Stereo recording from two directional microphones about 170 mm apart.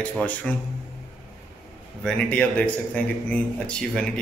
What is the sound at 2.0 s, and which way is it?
A man's voice, 5° left (ahead or behind).